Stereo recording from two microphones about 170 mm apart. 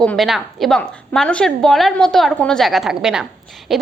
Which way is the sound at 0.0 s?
5° left (ahead or behind).